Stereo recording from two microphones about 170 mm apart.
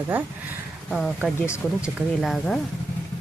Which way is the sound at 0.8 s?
5° left (ahead or behind).